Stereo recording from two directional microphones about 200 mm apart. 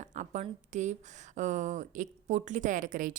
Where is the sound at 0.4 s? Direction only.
35° right (ahead or behind).